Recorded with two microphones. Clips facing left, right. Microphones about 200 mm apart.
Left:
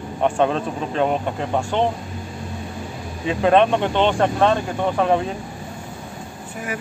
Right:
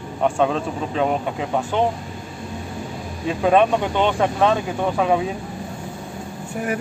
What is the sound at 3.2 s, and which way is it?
Speech, 5° right (ahead or behind).